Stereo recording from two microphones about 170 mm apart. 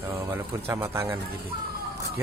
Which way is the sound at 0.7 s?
15° right (ahead or behind).